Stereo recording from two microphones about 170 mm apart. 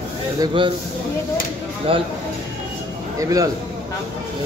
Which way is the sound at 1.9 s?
30° right (ahead or behind).